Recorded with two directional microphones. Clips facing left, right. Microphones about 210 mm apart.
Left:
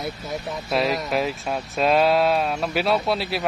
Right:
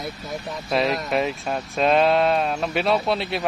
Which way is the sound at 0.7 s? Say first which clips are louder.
Right 1 dB; centre (ahead or behind).